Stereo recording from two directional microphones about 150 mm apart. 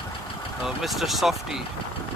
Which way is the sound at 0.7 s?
Centre (ahead or behind).